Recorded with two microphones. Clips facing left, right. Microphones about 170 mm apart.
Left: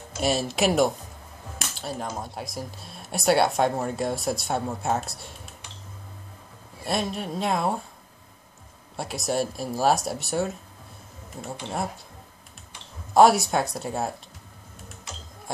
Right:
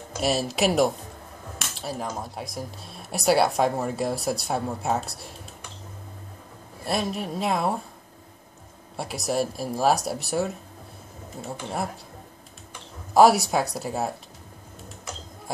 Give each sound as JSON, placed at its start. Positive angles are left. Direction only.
{"t": 0.2, "sound": "speech", "side_deg": 0}
{"t": 6.9, "sound": "speech", "side_deg": 0}
{"t": 8.9, "sound": "speech", "side_deg": 0}
{"t": 13.1, "sound": "speech", "side_deg": 0}